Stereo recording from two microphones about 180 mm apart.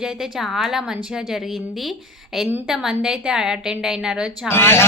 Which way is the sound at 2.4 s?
Centre (ahead or behind).